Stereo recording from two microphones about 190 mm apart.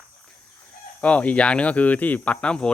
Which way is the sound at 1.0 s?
5° left (ahead or behind).